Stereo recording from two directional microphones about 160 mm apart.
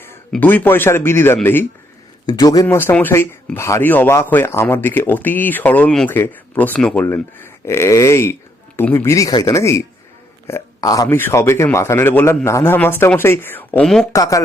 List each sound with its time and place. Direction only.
0.1 s speech: 10° left (ahead or behind)
2.2 s speech: 25° left (ahead or behind); by 14.1 s 5° left (ahead or behind)
14.1 s speech: 20° left (ahead or behind)